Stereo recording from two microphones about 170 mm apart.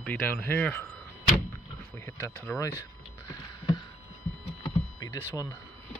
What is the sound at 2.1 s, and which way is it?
Speech, 15° left (ahead or behind).